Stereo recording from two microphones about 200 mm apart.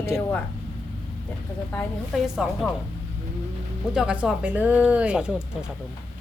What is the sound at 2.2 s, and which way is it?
Speech, centre (ahead or behind).